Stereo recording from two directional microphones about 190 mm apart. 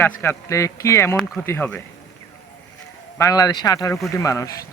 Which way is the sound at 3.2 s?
20° left (ahead or behind).